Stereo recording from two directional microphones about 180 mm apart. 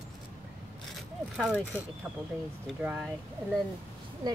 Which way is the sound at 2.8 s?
5° right (ahead or behind).